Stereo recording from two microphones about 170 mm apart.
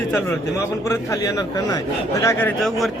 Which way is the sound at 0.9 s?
20° left (ahead or behind).